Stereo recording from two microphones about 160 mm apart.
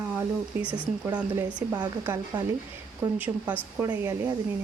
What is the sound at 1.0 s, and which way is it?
Speech, 20° right (ahead or behind).